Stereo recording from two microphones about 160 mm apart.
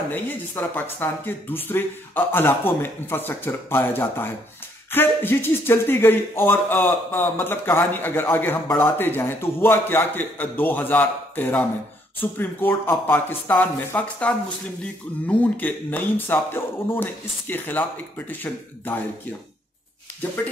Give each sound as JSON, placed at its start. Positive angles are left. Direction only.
{"t": 0.1, "sound": "speech", "side_deg": 10}